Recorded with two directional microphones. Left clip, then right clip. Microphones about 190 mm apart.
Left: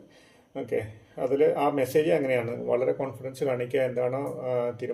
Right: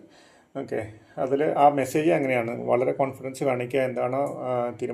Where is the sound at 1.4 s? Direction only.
25° right (ahead or behind).